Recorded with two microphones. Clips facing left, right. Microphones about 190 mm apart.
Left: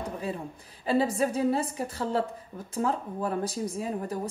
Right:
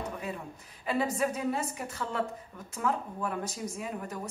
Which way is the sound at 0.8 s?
30° left (ahead or behind).